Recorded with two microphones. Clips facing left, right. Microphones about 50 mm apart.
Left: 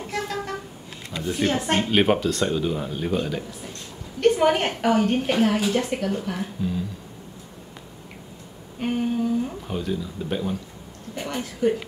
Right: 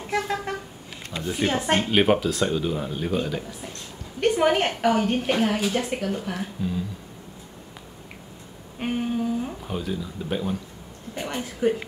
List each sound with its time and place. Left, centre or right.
0.0 s vehicle: centre
1.2 s a woman's voice: centre
8.7 s a sound: centre
11.1 s speech: centre